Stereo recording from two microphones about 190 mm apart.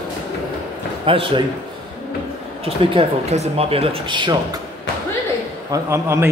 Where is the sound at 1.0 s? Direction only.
30° right (ahead or behind).